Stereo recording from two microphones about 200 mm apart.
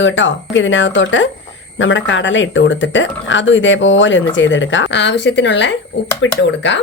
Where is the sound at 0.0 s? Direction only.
65° left (ahead or behind).